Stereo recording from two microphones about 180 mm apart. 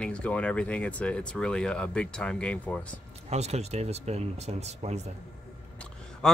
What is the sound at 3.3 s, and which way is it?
Speech, 35° right (ahead or behind).